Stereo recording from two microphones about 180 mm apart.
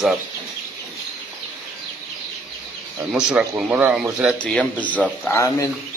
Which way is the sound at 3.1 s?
10° right (ahead or behind).